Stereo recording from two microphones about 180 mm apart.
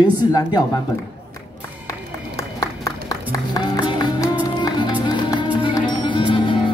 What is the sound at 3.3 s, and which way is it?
Music, 25° left (ahead or behind).